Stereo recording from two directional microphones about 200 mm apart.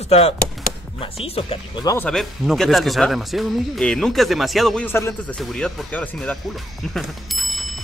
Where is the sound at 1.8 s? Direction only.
10° left (ahead or behind).